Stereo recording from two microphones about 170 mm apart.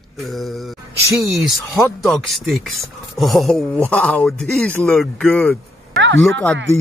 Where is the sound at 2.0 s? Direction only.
Centre (ahead or behind).